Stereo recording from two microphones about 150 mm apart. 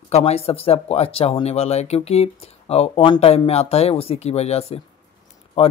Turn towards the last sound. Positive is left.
turn(degrees=40)  # may be behind; listen again after turning